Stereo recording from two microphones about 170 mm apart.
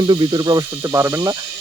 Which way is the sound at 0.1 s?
25° right (ahead or behind).